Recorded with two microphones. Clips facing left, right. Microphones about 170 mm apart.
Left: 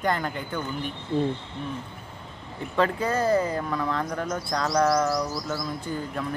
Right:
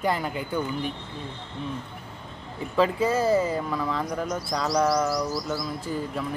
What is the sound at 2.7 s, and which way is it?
Speech, 5° right (ahead or behind).